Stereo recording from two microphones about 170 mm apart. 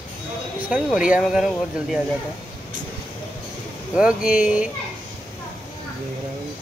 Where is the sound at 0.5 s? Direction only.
10° right (ahead or behind).